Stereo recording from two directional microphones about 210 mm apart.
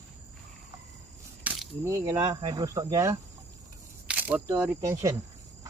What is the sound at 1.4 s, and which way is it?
Speech, 10° right (ahead or behind).